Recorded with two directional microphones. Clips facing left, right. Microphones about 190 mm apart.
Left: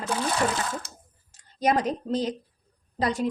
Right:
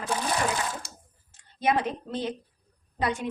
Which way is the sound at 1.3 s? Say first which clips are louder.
Left 2 dB; 40° left (ahead or behind).